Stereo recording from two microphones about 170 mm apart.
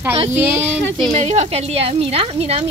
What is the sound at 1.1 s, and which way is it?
A woman's voice, 40° right (ahead or behind).